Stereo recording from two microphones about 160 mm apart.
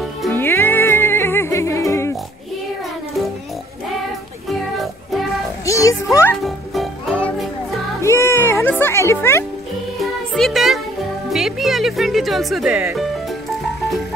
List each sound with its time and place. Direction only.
0.3 s music: 15° left (ahead or behind)
4.5 s music: centre (ahead or behind)
5.7 s music: 20° left (ahead or behind)
6.4 s music: centre (ahead or behind)
8.0 s music: 15° left (ahead or behind)
9.9 s music: centre (ahead or behind)